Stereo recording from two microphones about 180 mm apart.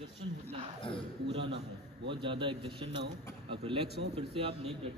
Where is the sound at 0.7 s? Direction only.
30° left (ahead or behind).